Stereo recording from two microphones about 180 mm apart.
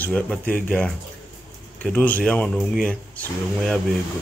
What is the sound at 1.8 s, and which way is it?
A man's voice, 10° left (ahead or behind).